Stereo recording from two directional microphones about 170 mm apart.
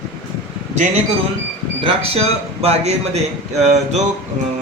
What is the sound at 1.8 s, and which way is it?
A man's voice, 35° right (ahead or behind).